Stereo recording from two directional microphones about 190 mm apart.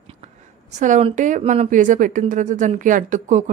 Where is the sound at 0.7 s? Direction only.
40° right (ahead or behind).